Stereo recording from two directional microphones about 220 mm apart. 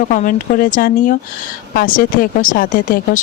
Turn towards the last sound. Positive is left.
turn(degrees=40)  # may be behind; listen again after turning